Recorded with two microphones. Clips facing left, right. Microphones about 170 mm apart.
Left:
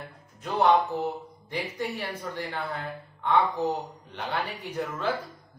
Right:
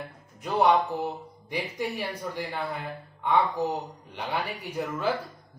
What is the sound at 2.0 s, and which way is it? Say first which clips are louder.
Speech: right 1 dB; 15° right (ahead or behind).